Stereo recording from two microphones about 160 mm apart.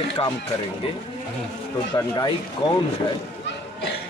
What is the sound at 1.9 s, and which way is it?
Speech, 25° left (ahead or behind).